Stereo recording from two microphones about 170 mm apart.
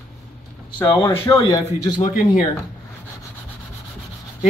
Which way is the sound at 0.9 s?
20° left (ahead or behind).